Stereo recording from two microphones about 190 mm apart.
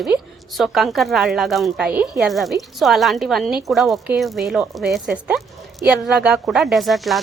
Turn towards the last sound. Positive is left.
turn(degrees=0)  # may be behind; listen again after turning